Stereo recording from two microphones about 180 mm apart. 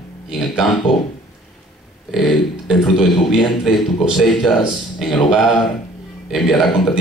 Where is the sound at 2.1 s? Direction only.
Centre (ahead or behind).